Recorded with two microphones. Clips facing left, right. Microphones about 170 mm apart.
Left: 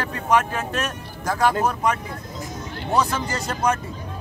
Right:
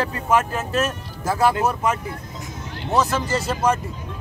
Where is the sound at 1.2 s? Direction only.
5° right (ahead or behind).